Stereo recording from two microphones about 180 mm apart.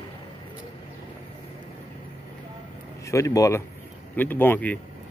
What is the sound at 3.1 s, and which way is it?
A man's voice, 20° left (ahead or behind).